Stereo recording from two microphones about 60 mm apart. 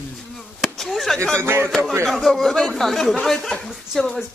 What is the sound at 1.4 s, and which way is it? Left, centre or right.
Speech, right.